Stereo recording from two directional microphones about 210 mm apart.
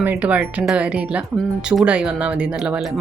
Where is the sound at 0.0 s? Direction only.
5° right (ahead or behind).